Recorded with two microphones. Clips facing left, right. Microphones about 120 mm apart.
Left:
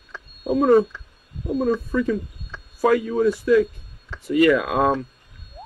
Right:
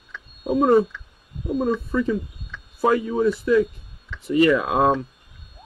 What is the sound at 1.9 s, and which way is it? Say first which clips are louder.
Speech: even; 25° right (ahead or behind).